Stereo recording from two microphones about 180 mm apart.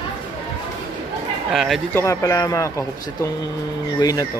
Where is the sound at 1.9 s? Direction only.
15° left (ahead or behind).